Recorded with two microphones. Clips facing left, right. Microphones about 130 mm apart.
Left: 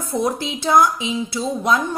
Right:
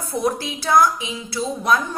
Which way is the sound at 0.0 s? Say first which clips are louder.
Left 1 dB; 25° left (ahead or behind).